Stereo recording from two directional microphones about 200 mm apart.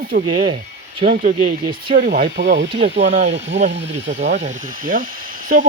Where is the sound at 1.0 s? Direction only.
45° right (ahead or behind).